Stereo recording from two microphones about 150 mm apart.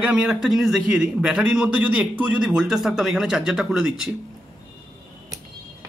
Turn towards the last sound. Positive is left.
turn(degrees=-5)  # may be behind; listen again after turning